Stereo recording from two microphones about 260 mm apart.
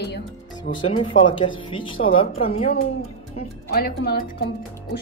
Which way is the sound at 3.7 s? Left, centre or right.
Left.